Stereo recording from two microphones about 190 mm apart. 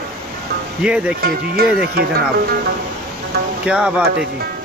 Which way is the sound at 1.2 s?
55° right (ahead or behind).